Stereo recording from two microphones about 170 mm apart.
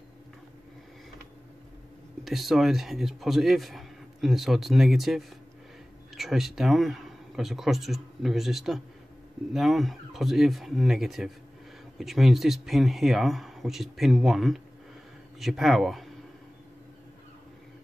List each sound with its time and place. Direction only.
2.2 s speech: centre (ahead or behind)